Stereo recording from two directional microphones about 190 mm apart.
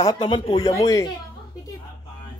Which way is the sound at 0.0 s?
25° left (ahead or behind).